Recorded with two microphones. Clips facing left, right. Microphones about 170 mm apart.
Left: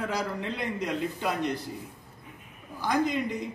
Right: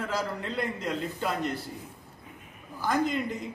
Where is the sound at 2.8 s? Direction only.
20° left (ahead or behind).